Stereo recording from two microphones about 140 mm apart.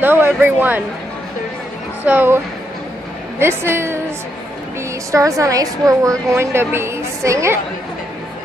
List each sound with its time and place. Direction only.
0.0 s speech: 15° right (ahead or behind)
2.0 s speech: 15° right (ahead or behind)
5.1 s a woman's voice: 25° right (ahead or behind)